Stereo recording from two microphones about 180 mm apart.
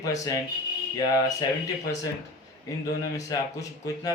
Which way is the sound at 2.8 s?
20° left (ahead or behind).